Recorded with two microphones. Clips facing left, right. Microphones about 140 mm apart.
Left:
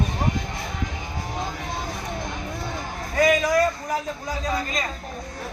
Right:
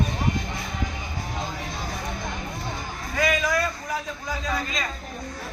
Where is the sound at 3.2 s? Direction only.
40° left (ahead or behind).